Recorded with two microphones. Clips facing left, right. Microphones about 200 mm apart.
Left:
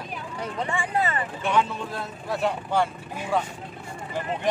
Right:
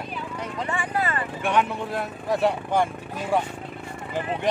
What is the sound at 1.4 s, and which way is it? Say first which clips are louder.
Speech: right 1 dB; 15° right (ahead or behind).